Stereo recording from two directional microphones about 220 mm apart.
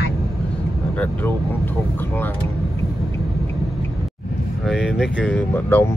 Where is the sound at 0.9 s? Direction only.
10° left (ahead or behind).